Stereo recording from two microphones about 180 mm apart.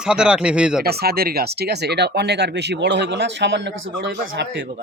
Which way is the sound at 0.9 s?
60° right (ahead or behind).